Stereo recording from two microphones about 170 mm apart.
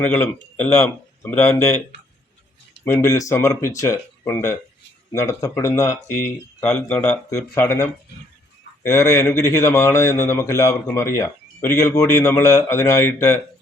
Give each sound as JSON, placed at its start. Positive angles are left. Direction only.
{"t": 0.0, "sound": "speech", "side_deg": 10}
{"t": 2.8, "sound": "speech", "side_deg": 15}